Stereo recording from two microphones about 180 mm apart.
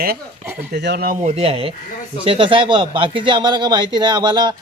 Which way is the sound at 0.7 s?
65° right (ahead or behind).